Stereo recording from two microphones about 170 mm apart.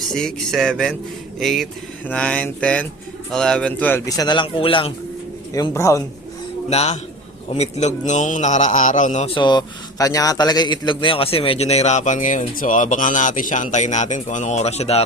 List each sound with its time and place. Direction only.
0.1 s a man's voice: 5° left (ahead or behind); by 4.9 s 30° left (ahead or behind)
5.5 s a man's voice: 20° left (ahead or behind)
6.7 s a man's voice: 40° left (ahead or behind)
9.3 s a man's voice: 25° left (ahead or behind)